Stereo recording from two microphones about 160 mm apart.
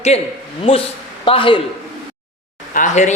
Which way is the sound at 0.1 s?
40° left (ahead or behind).